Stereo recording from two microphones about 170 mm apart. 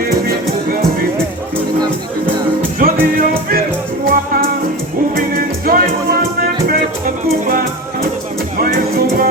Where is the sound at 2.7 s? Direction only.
60° right (ahead or behind).